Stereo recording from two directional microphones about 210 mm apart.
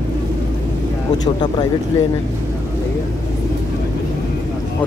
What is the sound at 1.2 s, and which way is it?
Speech, 20° left (ahead or behind).